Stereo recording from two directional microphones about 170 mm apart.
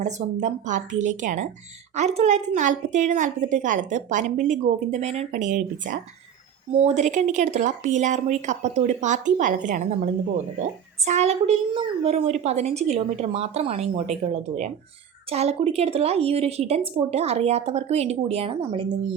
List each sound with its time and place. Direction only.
0.0 s a woman's voice: 45° right (ahead or behind); by 18.9 s 30° right (ahead or behind)